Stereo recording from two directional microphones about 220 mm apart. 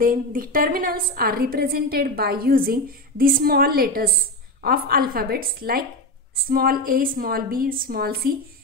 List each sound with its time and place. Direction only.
0.0 s a woman's voice: 40° right (ahead or behind)